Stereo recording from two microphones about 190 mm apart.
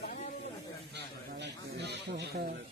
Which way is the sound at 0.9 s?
65° right (ahead or behind).